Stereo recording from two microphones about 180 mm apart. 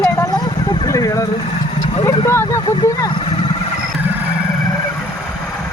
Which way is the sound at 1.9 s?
30° left (ahead or behind).